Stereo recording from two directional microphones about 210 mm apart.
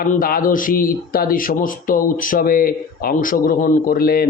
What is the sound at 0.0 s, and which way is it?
Speech, 45° left (ahead or behind).